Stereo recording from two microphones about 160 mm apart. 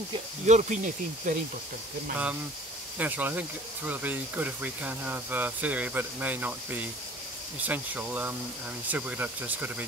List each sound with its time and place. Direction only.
0.5 s speech: 50° right (ahead or behind)
3.0 s speech: 10° right (ahead or behind)